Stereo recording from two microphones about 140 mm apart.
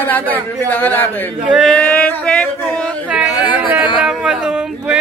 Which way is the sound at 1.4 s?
5° right (ahead or behind).